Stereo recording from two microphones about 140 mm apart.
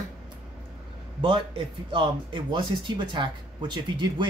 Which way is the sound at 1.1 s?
40° right (ahead or behind).